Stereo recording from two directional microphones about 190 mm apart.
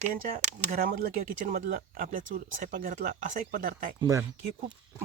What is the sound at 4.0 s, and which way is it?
Speech, 15° right (ahead or behind).